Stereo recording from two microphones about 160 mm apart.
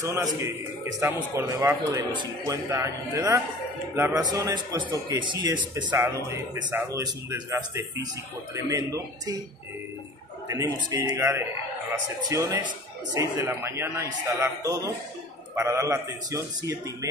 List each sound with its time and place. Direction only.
0.0 s speech: 20° right (ahead or behind)
4.1 s speech: 25° right (ahead or behind)
6.0 s speech: 15° right (ahead or behind)
10.5 s a man's voice: 25° right (ahead or behind)